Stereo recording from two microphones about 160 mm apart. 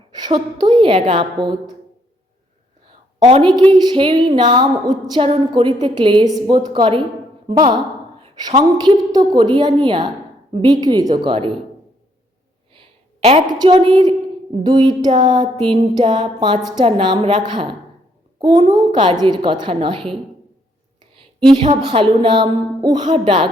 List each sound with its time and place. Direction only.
0.6 s music: 30° right (ahead or behind)
2.8 s a woman's voice: 30° right (ahead or behind)
4.4 s music: 30° right (ahead or behind)
7.4 s speech: 30° right (ahead or behind)
8.2 s music: 30° right (ahead or behind)
13.5 s music: 25° right (ahead or behind)
21.4 s music: 30° right (ahead or behind)
21.8 s speech: 30° right (ahead or behind)